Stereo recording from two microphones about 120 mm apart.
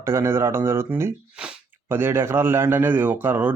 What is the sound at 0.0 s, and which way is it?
A man's voice, 20° right (ahead or behind).